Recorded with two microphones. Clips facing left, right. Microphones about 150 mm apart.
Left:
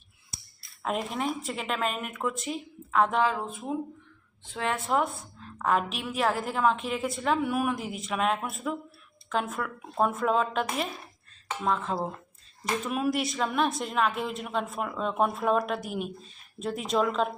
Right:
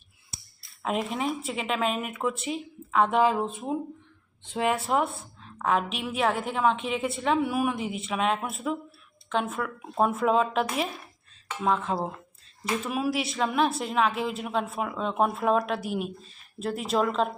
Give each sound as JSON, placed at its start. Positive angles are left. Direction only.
{"t": 0.8, "sound": "speech", "side_deg": 0}
{"t": 3.2, "sound": "speech", "side_deg": -20}
{"t": 4.9, "sound": "speech", "side_deg": 0}